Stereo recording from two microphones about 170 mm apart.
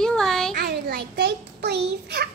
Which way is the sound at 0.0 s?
5° left (ahead or behind).